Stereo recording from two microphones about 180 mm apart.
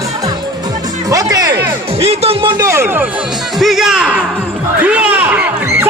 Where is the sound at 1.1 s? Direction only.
20° right (ahead or behind).